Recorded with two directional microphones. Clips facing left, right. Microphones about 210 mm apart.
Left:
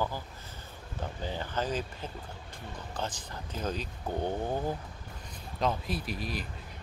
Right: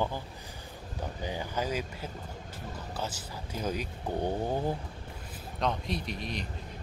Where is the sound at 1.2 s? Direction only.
10° right (ahead or behind).